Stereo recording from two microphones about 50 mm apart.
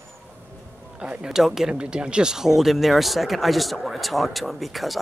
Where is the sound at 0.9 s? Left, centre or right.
Right.